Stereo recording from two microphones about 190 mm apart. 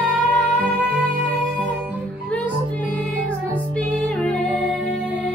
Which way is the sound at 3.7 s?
5° left (ahead or behind).